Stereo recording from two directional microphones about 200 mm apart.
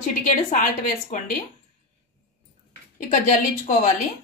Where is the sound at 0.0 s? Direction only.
40° left (ahead or behind).